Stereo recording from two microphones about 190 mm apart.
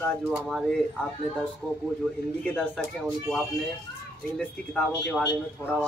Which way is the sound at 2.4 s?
10° left (ahead or behind).